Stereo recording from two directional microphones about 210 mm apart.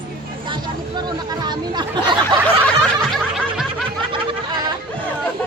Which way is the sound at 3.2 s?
Centre (ahead or behind).